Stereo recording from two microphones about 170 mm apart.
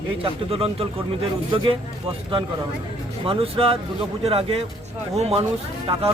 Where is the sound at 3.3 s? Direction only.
35° right (ahead or behind).